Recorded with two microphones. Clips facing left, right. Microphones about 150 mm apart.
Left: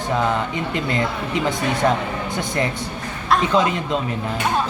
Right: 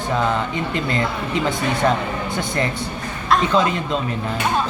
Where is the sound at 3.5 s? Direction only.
15° left (ahead or behind).